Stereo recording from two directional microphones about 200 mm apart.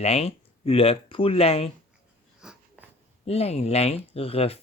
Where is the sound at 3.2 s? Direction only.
30° left (ahead or behind).